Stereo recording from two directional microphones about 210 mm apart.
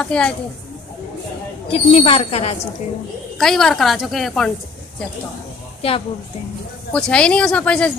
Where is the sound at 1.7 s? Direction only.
25° left (ahead or behind).